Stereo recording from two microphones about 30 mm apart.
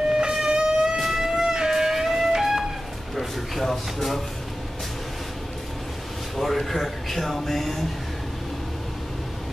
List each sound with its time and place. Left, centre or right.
0.1 s a sound: right
0.9 s vehicle: centre
1.4 s music: right
3.6 s speech: centre
6.3 s speech: centre